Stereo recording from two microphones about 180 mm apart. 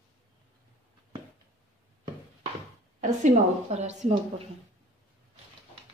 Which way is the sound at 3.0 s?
40° right (ahead or behind).